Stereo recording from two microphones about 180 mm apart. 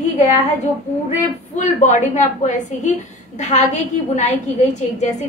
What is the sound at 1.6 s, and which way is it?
A woman's voice, 40° left (ahead or behind).